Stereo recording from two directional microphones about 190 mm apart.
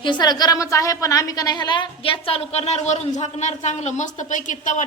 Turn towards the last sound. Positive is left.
turn(degrees=40)  # may be behind; listen again after turning